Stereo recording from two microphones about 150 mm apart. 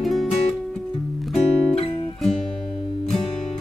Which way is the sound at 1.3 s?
40° left (ahead or behind).